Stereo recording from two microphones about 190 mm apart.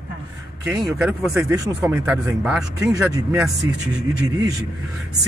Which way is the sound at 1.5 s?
15° right (ahead or behind).